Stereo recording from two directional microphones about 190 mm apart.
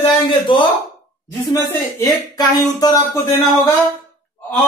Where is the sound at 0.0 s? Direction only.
25° left (ahead or behind).